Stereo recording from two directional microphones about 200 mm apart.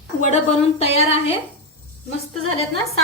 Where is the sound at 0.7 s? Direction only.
30° left (ahead or behind).